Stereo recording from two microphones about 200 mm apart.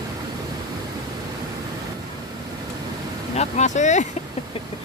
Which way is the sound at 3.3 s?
35° left (ahead or behind).